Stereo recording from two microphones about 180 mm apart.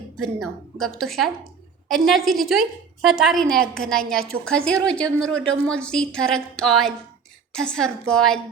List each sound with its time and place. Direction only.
0.2 s a woman's voice: centre (ahead or behind)